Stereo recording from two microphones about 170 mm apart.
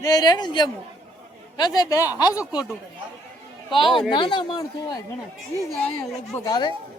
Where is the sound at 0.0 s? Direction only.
20° left (ahead or behind).